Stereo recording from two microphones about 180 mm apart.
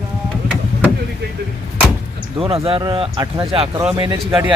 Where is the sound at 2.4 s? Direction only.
30° right (ahead or behind).